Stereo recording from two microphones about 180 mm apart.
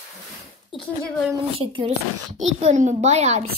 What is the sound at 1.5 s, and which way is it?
A woman's voice, 30° right (ahead or behind).